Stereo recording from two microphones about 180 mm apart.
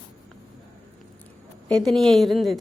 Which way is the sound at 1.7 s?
Centre (ahead or behind).